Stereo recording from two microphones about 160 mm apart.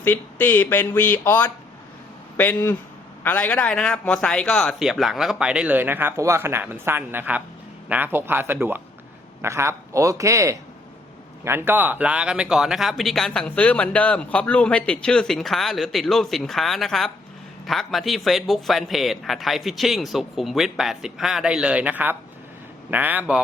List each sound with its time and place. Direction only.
0.0 s a man's voice: 10° left (ahead or behind); by 23.4 s 10° right (ahead or behind)